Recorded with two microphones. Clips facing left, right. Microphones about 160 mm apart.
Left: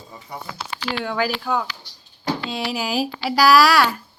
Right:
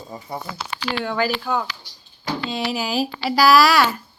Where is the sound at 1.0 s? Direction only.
Centre (ahead or behind).